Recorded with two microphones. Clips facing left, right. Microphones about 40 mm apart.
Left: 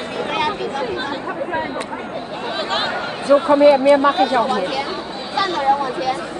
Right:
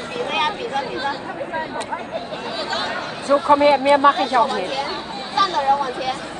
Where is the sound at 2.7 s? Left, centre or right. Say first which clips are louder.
Left 3 dB; left.